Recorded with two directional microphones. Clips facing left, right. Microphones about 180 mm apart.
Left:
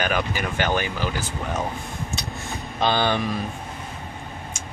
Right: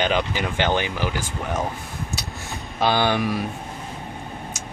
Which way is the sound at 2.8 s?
10° right (ahead or behind).